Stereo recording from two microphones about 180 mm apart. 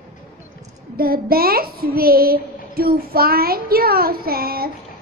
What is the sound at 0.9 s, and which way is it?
A woman's voice, 55° right (ahead or behind).